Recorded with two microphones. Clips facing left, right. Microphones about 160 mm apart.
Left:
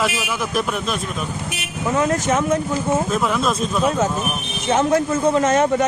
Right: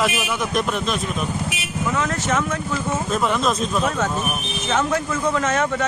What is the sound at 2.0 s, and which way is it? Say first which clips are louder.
Speech: left 6 dB; 30° left (ahead or behind).